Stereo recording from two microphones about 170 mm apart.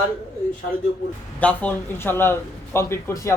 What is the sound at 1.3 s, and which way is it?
A man's voice, 10° left (ahead or behind).